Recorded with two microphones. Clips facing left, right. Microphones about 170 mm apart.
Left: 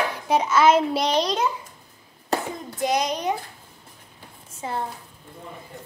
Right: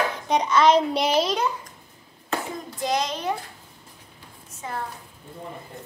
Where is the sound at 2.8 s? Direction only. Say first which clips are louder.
Left 2 dB; 20° left (ahead or behind).